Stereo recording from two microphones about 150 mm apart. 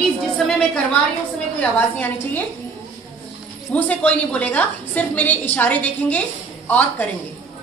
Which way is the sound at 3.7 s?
10° left (ahead or behind).